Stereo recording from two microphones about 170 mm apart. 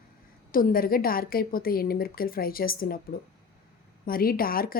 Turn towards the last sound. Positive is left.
turn(degrees=60)  # may be behind; listen again after turning